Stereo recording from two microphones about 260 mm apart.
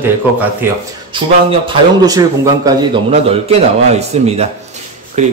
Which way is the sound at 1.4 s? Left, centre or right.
Centre.